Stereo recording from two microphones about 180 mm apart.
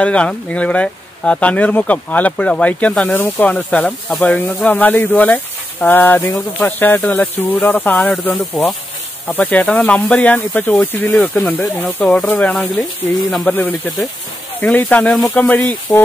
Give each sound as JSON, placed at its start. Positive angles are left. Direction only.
{"t": 0.0, "sound": "speech", "side_deg": 5}